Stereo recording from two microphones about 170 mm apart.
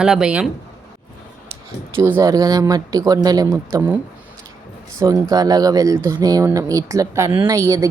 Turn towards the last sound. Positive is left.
turn(degrees=-20)  # may be behind; listen again after turning